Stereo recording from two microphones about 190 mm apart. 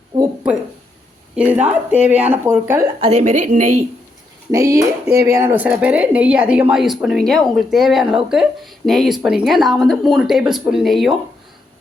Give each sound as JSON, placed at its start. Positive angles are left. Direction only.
{"t": 1.4, "sound": "speech", "side_deg": -10}
{"t": 3.0, "sound": "a woman's voice", "side_deg": -35}
{"t": 4.5, "sound": "a woman's voice", "side_deg": -15}